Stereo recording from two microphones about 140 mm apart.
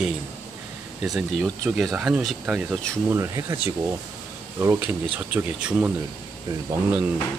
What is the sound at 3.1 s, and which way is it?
Speech, 20° right (ahead or behind).